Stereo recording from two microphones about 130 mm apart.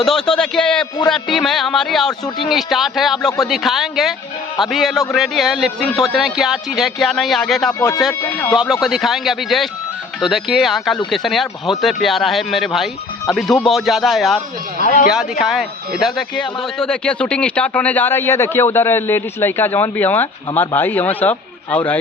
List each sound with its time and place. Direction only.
0.0 s speech: 5° left (ahead or behind)
7.7 s a man's voice: 25° left (ahead or behind)
8.5 s speech: centre (ahead or behind)
14.8 s speech: 90° left
15.1 s a man's voice: 5° right (ahead or behind); by 21.9 s 10° left (ahead or behind)